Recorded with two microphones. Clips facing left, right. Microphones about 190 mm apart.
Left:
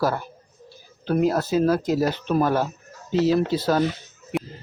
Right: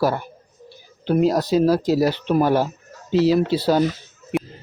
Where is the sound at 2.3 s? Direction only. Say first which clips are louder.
Right 3 dB; 10° right (ahead or behind).